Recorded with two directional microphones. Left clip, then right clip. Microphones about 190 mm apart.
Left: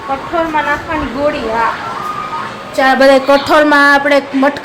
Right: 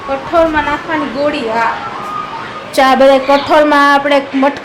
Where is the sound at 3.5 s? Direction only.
5° left (ahead or behind).